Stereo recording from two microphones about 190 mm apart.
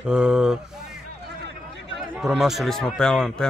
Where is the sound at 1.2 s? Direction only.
60° right (ahead or behind).